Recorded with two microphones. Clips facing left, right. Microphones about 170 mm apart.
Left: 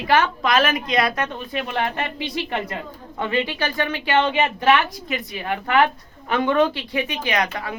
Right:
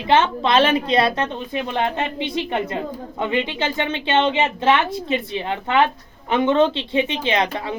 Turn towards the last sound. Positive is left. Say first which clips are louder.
# right 3 dB
turn(degrees=-25)  # may be behind; listen again after turning